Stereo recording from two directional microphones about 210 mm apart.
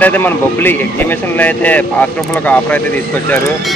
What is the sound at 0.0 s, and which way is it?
Speech, 10° left (ahead or behind).